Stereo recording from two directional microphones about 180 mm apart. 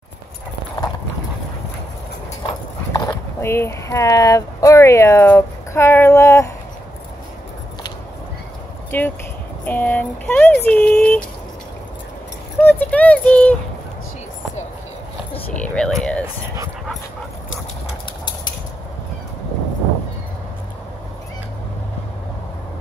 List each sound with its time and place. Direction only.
2.4 s speech: 20° left (ahead or behind)
8.9 s speech: 10° left (ahead or behind)
12.5 s speech: 10° left (ahead or behind)
15.5 s a sound: 5° left (ahead or behind)